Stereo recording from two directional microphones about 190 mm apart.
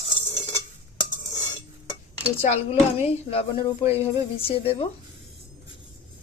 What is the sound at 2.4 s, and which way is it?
Speech, 35° left (ahead or behind).